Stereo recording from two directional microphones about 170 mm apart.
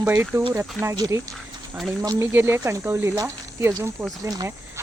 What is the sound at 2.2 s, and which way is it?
Speech, 15° right (ahead or behind).